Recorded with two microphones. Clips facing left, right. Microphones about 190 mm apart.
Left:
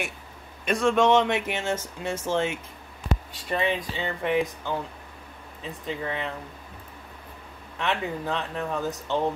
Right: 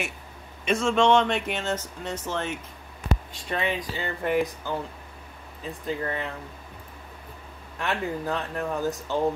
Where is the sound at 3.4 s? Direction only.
Centre (ahead or behind).